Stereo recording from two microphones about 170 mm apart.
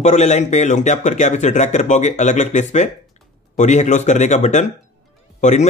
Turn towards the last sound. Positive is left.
turn(degrees=45)  # may be behind; listen again after turning